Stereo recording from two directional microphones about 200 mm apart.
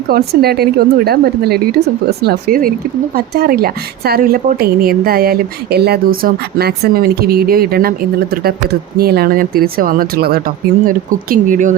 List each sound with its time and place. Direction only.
0.1 s a woman's voice: 50° right (ahead or behind)